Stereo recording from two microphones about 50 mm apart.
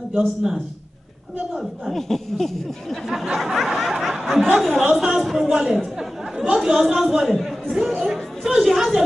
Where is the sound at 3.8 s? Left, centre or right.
Centre.